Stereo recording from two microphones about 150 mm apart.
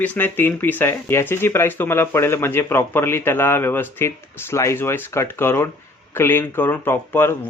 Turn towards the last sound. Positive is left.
turn(degrees=15)  # may be behind; listen again after turning